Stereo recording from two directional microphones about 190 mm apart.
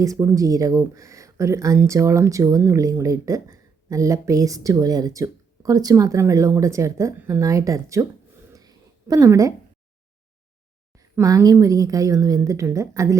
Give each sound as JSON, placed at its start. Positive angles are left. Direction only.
{"t": 0.0, "sound": "speech", "side_deg": -20}
{"t": 8.5, "sound": "a sound", "side_deg": -20}
{"t": 10.9, "sound": "speech", "side_deg": -15}